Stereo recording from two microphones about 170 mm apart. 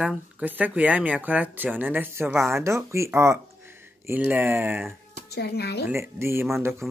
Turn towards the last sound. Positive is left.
turn(degrees=-15)  # may be behind; listen again after turning